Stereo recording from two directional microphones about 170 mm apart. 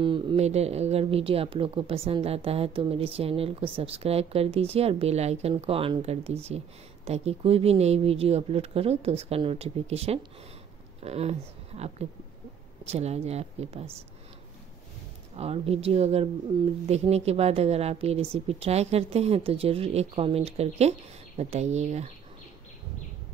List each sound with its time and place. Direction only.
0.0 s speech: 30° right (ahead or behind)
15.3 s speech: 35° right (ahead or behind)